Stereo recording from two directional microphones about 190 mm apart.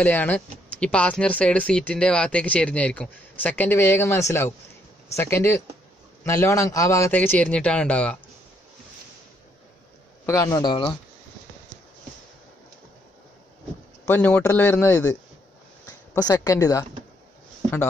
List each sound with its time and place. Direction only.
0.0 s speech: 10° left (ahead or behind)
10.2 s speech: 15° left (ahead or behind)
14.0 s speech: 10° left (ahead or behind)
16.2 s speech: 20° left (ahead or behind)